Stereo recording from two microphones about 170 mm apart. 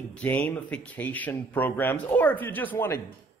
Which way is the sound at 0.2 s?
10° left (ahead or behind).